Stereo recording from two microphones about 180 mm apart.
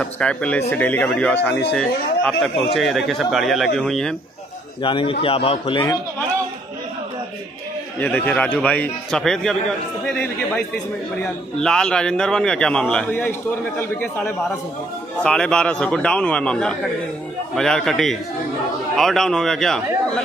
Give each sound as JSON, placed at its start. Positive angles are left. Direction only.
{"t": 0.0, "sound": "a man's voice", "side_deg": 5}
{"t": 4.8, "sound": "a man's voice", "side_deg": 30}
{"t": 8.0, "sound": "a man's voice", "side_deg": 10}